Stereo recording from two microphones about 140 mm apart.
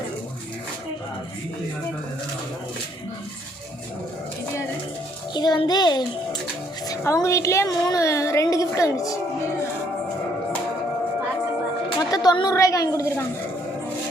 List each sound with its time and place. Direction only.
5.3 s a child's voice: 30° left (ahead or behind)
12.1 s a woman's voice: 30° left (ahead or behind)